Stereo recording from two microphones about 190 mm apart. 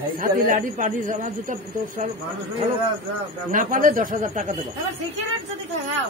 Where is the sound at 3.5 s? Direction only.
45° right (ahead or behind).